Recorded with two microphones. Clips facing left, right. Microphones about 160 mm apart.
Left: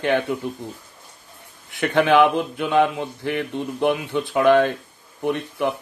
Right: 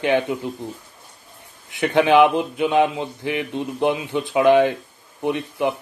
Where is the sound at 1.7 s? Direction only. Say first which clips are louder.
Right 1 dB; 15° right (ahead or behind).